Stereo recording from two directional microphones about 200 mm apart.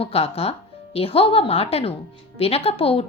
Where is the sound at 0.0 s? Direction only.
30° left (ahead or behind).